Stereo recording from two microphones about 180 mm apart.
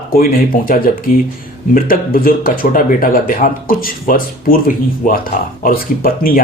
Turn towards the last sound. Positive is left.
turn(degrees=55)  # may be behind; listen again after turning